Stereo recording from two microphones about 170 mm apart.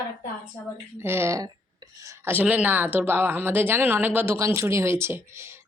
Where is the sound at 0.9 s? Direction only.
15° right (ahead or behind).